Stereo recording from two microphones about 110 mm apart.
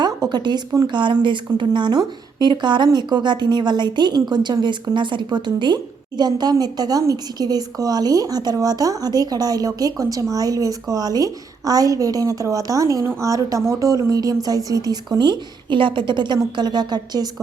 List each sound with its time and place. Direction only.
0.0 s a woman's voice: 40° right (ahead or behind)